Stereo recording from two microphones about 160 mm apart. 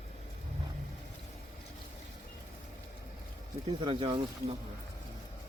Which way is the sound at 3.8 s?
35° right (ahead or behind).